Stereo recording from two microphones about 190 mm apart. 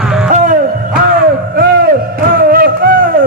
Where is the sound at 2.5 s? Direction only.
50° right (ahead or behind).